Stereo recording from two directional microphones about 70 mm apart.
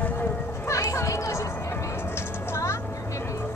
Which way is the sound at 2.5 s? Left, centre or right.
Left.